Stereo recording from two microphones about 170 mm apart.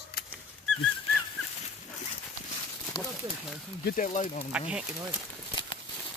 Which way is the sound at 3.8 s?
50° left (ahead or behind).